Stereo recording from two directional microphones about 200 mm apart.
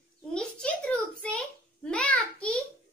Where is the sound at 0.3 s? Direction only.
5° left (ahead or behind).